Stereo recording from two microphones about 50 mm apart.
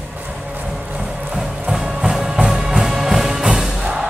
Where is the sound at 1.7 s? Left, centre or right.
Centre.